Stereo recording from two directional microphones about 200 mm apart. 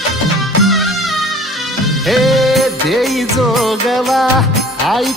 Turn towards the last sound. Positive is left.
turn(degrees=0)  # may be behind; listen again after turning